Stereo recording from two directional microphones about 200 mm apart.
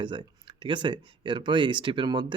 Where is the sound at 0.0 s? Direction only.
25° right (ahead or behind).